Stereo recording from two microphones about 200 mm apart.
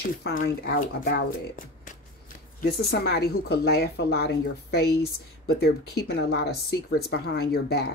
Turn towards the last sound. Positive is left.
turn(degrees=50)  # may be behind; listen again after turning